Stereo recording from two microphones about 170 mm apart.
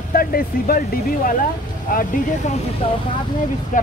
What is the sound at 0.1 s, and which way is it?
Speech, 60° left (ahead or behind).